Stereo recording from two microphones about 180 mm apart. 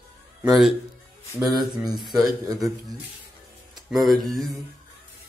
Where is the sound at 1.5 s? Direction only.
25° right (ahead or behind).